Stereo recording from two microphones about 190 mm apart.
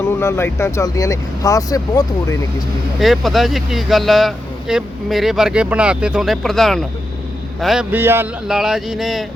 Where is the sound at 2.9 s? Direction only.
Centre (ahead or behind).